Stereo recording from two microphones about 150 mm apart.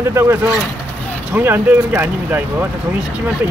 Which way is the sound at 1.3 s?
15° right (ahead or behind).